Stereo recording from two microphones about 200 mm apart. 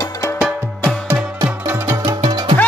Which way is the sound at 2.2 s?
20° right (ahead or behind).